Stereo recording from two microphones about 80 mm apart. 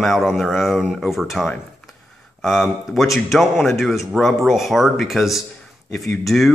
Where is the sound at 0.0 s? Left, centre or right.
Centre.